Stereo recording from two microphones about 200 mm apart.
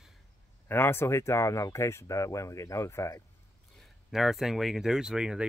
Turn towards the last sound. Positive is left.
turn(degrees=-5)  # may be behind; listen again after turning